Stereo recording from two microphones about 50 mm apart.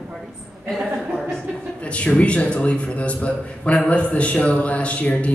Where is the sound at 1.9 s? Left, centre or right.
Left.